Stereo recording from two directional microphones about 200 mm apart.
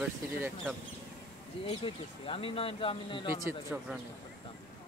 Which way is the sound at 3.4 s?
5° right (ahead or behind).